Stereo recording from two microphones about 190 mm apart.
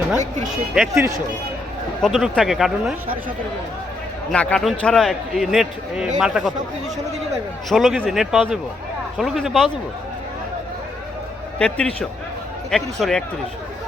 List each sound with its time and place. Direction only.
0.9 s speech: 15° right (ahead or behind)
2.0 s a man's voice: centre (ahead or behind)
4.3 s a man's voice: 5° left (ahead or behind)
7.7 s a man's voice: centre (ahead or behind)
11.6 s a man's voice: 5° left (ahead or behind)